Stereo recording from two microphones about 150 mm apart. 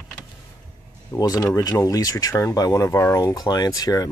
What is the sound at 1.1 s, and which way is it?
Speech, 25° left (ahead or behind).